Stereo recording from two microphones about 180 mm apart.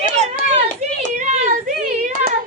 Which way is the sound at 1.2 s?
40° right (ahead or behind).